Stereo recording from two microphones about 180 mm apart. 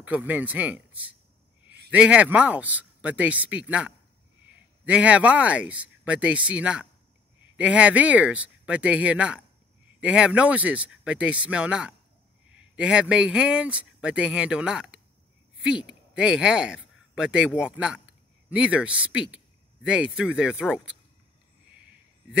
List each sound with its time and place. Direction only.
0.0 s speech: 10° right (ahead or behind)